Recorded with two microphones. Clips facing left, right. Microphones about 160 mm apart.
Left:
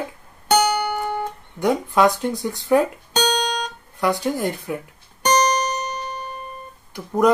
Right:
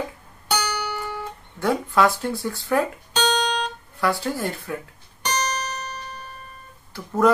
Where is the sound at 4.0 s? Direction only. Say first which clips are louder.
Left 3 dB; 20° left (ahead or behind).